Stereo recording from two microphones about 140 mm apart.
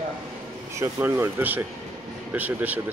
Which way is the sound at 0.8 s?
20° right (ahead or behind).